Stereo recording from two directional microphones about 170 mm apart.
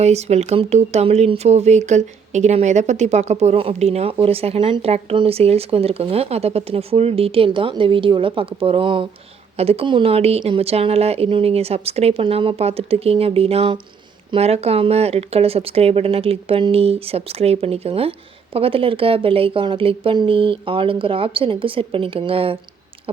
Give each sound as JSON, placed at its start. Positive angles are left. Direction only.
{"t": 0.0, "sound": "speech", "side_deg": -40}